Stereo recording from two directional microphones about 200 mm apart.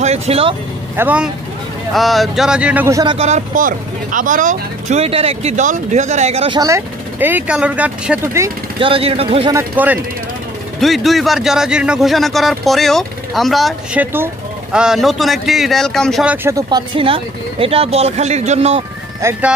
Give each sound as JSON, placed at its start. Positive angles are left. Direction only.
{"t": 0.0, "sound": "speech", "side_deg": -30}
{"t": 0.9, "sound": "speech", "side_deg": -5}
{"t": 3.2, "sound": "speech", "side_deg": -35}
{"t": 6.6, "sound": "speech", "side_deg": -10}
{"t": 8.7, "sound": "speech", "side_deg": -25}
{"t": 9.5, "sound": "speech", "side_deg": -10}
{"t": 10.8, "sound": "speech", "side_deg": 0}
{"t": 16.4, "sound": "speech", "side_deg": -20}
{"t": 19.2, "sound": "speech", "side_deg": -15}